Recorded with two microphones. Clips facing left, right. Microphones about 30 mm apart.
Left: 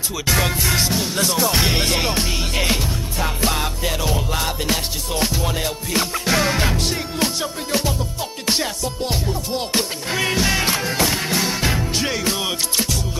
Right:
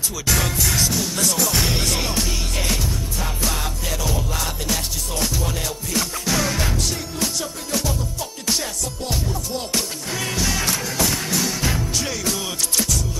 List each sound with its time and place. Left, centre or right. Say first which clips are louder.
0.3 s music: left 2 dB; left